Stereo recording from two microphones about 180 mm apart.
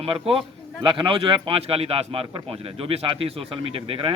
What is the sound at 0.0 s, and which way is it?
Speech, 30° right (ahead or behind).